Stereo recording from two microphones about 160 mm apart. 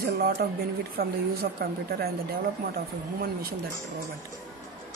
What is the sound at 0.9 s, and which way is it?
A woman's voice, 70° right (ahead or behind).